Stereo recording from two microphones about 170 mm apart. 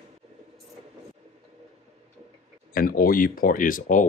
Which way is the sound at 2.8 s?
60° left (ahead or behind).